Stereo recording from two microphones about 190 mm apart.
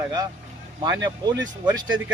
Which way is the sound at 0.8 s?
20° right (ahead or behind).